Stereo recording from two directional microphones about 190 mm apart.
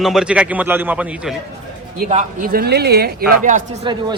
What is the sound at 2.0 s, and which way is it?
Speech, 35° right (ahead or behind).